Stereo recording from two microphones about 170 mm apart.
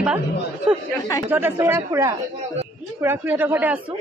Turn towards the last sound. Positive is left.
turn(degrees=-10)  # may be behind; listen again after turning